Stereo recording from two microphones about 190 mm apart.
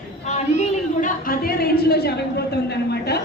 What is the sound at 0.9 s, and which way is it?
A woman's voice, 45° left (ahead or behind).